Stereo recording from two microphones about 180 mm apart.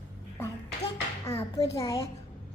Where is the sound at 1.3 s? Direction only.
35° left (ahead or behind).